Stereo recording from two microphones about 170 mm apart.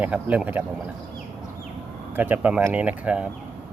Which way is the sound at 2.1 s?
10° right (ahead or behind).